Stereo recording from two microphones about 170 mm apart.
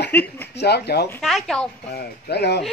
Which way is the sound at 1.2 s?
Centre (ahead or behind).